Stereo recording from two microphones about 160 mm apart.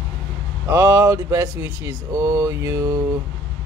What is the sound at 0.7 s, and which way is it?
Speech, 15° right (ahead or behind).